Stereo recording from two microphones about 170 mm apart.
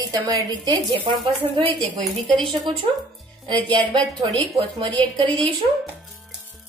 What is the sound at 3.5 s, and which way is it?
A woman's voice, 30° right (ahead or behind).